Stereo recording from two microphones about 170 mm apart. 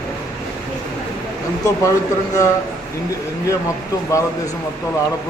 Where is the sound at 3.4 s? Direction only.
20° left (ahead or behind).